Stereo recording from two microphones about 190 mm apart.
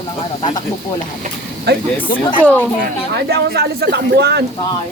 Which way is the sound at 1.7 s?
60° right (ahead or behind).